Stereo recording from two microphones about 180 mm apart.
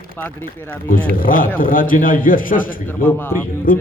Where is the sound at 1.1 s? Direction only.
50° left (ahead or behind).